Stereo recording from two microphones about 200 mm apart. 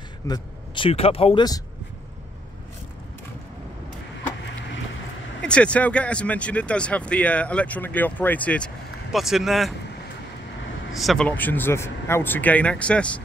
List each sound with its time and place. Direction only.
0.3 s speech: 25° left (ahead or behind)
5.4 s speech: 5° left (ahead or behind)
11.0 s speech: centre (ahead or behind)